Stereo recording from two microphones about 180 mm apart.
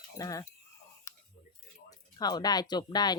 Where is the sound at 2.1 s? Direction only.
20° left (ahead or behind).